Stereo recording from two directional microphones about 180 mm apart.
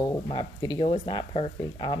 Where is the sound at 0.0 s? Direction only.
20° left (ahead or behind).